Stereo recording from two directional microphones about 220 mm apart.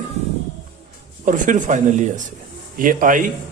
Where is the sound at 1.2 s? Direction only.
35° right (ahead or behind).